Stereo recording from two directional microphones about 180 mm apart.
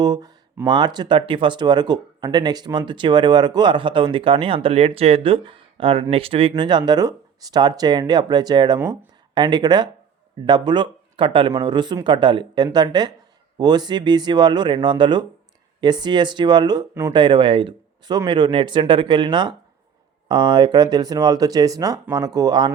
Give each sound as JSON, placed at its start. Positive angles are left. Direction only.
{"t": 0.0, "sound": "speech", "side_deg": -20}